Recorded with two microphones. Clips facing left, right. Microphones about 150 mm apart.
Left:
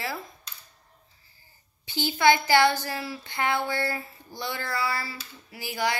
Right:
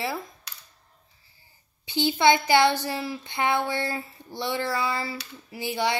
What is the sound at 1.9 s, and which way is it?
A woman's voice, 20° right (ahead or behind).